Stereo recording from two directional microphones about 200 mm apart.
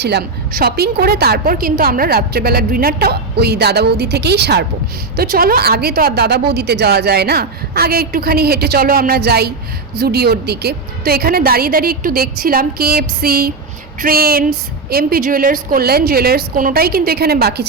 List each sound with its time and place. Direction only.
0.0 s a woman's voice: 55° right (ahead or behind)